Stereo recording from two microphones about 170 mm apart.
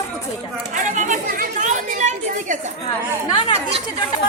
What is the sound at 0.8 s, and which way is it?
Chatter, 50° right (ahead or behind).